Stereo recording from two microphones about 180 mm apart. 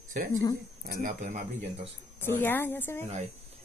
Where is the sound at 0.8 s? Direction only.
45° right (ahead or behind).